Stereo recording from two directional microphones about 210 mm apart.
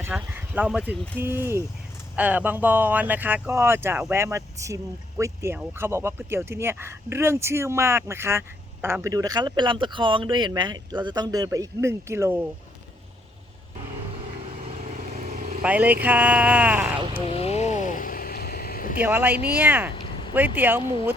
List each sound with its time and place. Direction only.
0.0 s speech: 10° right (ahead or behind)
15.3 s vehicle: 35° right (ahead or behind)
15.6 s speech: 5° right (ahead or behind)
17.2 s vehicle: 30° left (ahead or behind)
19.0 s speech: 10° right (ahead or behind)